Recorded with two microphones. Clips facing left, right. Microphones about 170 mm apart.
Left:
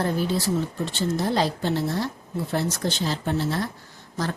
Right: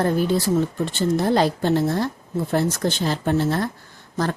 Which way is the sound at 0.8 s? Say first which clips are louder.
Right 4 dB; 55° right (ahead or behind).